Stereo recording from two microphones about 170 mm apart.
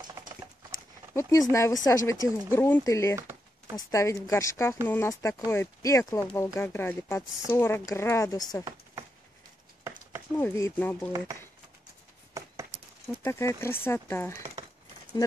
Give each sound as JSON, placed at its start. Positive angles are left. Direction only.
{"t": 0.2, "sound": "patter", "side_deg": -15}
{"t": 1.5, "sound": "speech", "side_deg": 15}
{"t": 3.2, "sound": "a sound", "side_deg": -15}
{"t": 3.9, "sound": "speech", "side_deg": 20}
{"t": 10.3, "sound": "speech", "side_deg": 15}
{"t": 12.4, "sound": "a sound", "side_deg": -20}
{"t": 13.2, "sound": "speech", "side_deg": 15}